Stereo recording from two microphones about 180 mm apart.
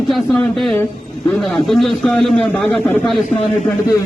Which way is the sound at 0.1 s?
5° left (ahead or behind).